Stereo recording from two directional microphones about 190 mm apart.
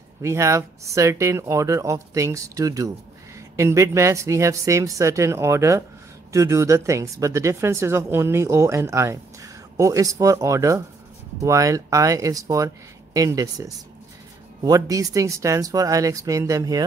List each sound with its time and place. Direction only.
0.2 s speech: 15° right (ahead or behind)